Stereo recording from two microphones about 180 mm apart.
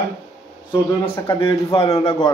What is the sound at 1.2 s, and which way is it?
Speech, 25° left (ahead or behind).